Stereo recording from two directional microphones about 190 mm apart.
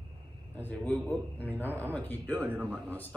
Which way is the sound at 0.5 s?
10° left (ahead or behind).